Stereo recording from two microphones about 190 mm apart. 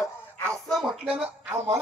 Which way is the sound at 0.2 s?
5° left (ahead or behind).